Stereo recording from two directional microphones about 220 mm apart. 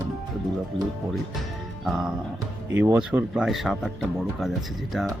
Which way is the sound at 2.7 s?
10° right (ahead or behind).